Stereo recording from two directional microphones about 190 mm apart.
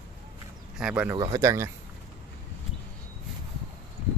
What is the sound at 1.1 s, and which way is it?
Speech, 20° right (ahead or behind).